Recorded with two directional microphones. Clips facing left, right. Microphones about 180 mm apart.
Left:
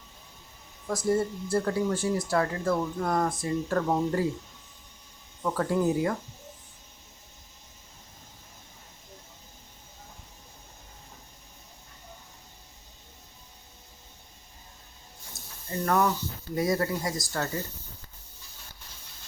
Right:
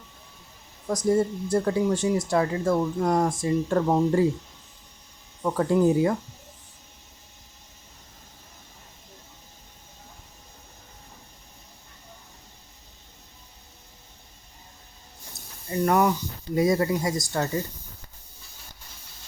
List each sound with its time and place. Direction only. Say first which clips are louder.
0.9 s speech: right 4 dB; 20° right (ahead or behind)
5.4 s speech: right 5 dB; 20° right (ahead or behind)
15.7 s a sound: right 4 dB; 15° right (ahead or behind)
16.6 s speech: right 5 dB; 20° right (ahead or behind)